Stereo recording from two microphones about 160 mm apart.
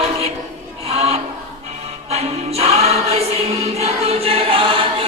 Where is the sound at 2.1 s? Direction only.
40° right (ahead or behind).